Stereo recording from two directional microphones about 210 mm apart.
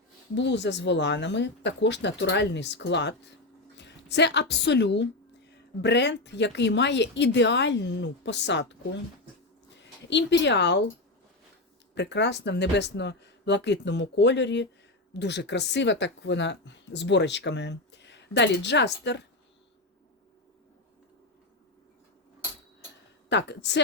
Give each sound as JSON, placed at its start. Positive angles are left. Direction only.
{"t": 0.3, "sound": "a woman's voice", "side_deg": 55}
{"t": 10.1, "sound": "speech", "side_deg": 60}
{"t": 11.9, "sound": "speech", "side_deg": 55}
{"t": 23.3, "sound": "speech", "side_deg": 55}